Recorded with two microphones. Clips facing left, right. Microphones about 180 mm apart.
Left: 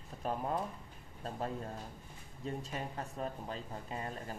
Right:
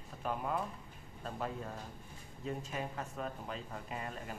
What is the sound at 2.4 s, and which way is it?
Speech, 35° left (ahead or behind).